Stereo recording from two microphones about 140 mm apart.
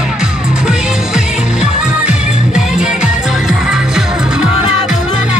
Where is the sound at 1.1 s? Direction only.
5° right (ahead or behind).